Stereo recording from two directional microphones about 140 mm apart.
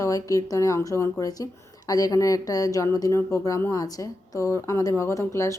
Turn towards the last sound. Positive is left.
turn(degrees=20)  # may be behind; listen again after turning